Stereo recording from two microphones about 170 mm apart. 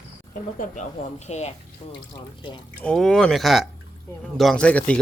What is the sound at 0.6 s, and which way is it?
Speech, 45° left (ahead or behind).